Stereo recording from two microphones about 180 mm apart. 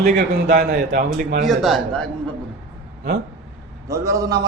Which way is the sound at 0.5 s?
60° right (ahead or behind).